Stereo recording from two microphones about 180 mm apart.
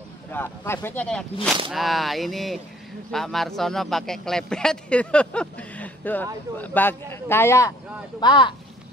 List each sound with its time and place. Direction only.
0.3 s a man's voice: 10° left (ahead or behind)
8.2 s speech: 25° left (ahead or behind)